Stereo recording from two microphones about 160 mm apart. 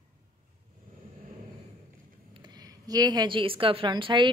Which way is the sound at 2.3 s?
25° right (ahead or behind).